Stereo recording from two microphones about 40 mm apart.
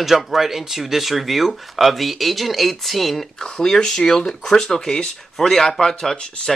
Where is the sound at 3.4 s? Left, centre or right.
Centre.